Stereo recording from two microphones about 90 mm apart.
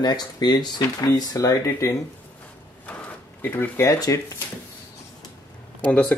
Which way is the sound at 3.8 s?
40° left (ahead or behind).